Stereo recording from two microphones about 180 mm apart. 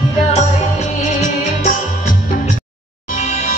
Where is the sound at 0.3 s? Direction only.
40° left (ahead or behind).